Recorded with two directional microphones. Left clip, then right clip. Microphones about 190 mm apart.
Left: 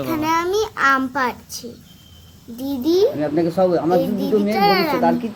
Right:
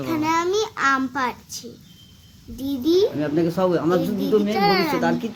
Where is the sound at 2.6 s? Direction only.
20° right (ahead or behind).